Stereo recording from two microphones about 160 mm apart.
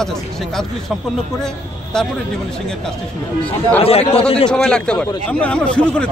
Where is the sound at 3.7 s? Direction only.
35° left (ahead or behind).